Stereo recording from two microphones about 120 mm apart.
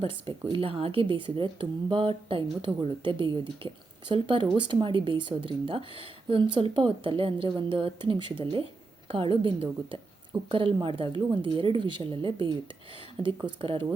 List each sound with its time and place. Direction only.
0.0 s speech: 45° right (ahead or behind)